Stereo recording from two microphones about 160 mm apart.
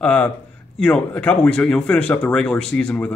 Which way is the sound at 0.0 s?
5° left (ahead or behind).